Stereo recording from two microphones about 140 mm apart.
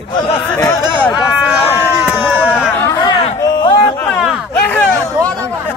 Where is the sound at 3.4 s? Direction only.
30° left (ahead or behind).